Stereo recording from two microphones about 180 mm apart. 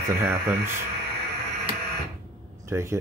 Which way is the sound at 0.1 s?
10° right (ahead or behind).